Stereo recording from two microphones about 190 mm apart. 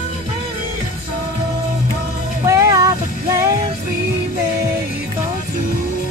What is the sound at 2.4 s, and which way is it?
Vehicle, 15° right (ahead or behind).